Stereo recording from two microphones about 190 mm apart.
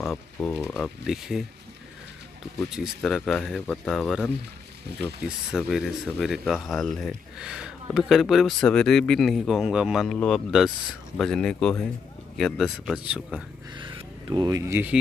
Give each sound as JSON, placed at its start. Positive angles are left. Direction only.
{"t": 0.0, "sound": "speech", "side_deg": 0}
{"t": 2.6, "sound": "speech", "side_deg": 0}
{"t": 13.7, "sound": "speech", "side_deg": -25}